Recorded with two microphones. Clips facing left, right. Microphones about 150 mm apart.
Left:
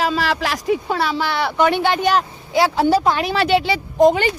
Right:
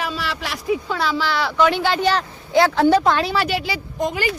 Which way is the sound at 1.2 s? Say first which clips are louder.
Right 1 dB; 55° left (ahead or behind).